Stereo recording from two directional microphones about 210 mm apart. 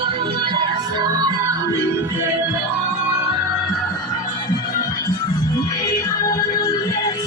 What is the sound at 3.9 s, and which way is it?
Music, 15° left (ahead or behind).